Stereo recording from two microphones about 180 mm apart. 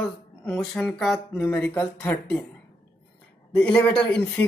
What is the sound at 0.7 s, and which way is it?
A woman's voice, 5° left (ahead or behind).